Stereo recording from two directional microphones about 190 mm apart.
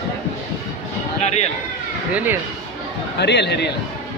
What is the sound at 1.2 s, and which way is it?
Speech, 35° left (ahead or behind).